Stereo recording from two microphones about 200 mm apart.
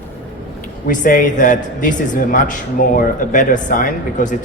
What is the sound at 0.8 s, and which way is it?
A man's voice, 40° left (ahead or behind).